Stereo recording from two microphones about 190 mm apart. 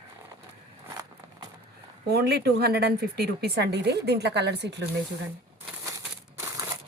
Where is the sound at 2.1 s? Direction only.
60° right (ahead or behind).